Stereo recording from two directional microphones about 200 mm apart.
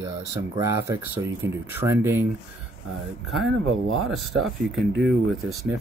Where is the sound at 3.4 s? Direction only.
85° right.